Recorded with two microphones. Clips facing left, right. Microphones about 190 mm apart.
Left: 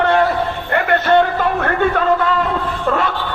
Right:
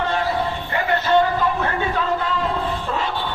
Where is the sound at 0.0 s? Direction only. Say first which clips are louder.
Left 7 dB; 65° left (ahead or behind).